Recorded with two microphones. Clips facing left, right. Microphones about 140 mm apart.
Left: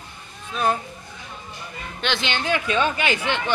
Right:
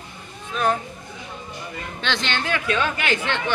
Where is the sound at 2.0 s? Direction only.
10° left (ahead or behind).